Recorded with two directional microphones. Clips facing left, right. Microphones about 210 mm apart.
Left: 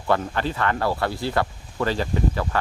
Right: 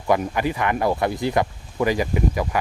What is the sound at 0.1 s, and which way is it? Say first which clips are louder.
Speech: right 2 dB; 15° right (ahead or behind).